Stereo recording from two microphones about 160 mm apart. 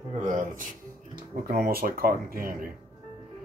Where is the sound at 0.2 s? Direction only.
50° right (ahead or behind).